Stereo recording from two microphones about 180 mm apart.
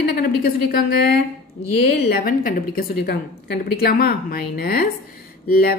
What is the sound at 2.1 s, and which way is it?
A woman's voice, 55° left (ahead or behind).